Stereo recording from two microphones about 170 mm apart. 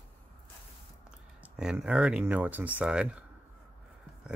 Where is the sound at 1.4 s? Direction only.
5° right (ahead or behind).